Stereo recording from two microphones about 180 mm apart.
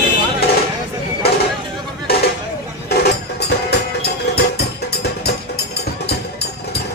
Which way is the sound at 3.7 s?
65° left (ahead or behind).